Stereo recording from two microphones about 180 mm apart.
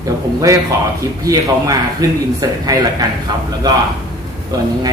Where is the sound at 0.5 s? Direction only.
20° right (ahead or behind).